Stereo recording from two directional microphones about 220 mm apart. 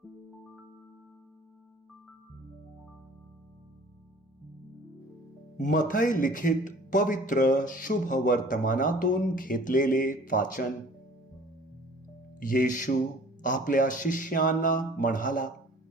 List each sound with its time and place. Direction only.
5.5 s a man's voice: 35° left (ahead or behind)
12.4 s a man's voice: 40° left (ahead or behind)